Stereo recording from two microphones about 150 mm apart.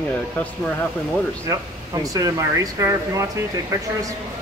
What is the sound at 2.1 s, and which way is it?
Speech, 25° right (ahead or behind).